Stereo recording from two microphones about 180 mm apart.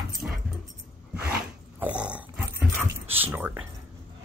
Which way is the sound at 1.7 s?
5° right (ahead or behind).